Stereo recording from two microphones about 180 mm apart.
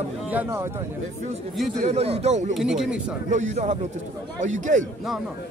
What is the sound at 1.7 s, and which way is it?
Speech, 35° right (ahead or behind).